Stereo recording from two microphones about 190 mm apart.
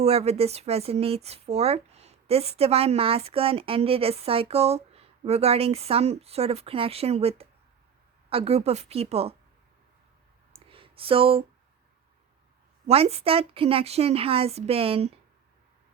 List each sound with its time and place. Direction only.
0.0 s speech: 35° right (ahead or behind)
10.5 s a sound: 30° right (ahead or behind)
12.9 s speech: 30° right (ahead or behind)